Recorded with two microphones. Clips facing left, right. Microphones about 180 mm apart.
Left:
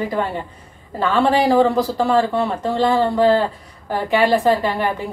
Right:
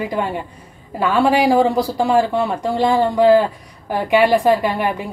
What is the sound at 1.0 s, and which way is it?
A woman's voice, 10° right (ahead or behind).